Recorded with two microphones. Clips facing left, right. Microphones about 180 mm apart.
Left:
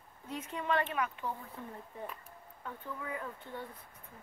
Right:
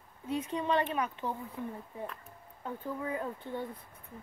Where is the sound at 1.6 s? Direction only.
10° right (ahead or behind).